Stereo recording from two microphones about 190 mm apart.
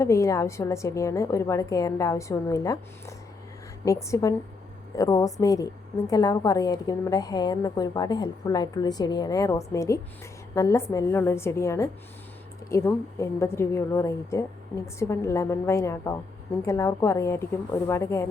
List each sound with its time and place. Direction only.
0.0 s a woman's voice: 15° left (ahead or behind)